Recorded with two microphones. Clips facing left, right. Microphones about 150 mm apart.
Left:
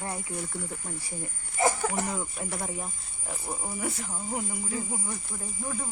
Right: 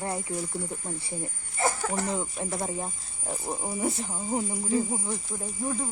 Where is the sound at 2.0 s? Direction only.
25° right (ahead or behind).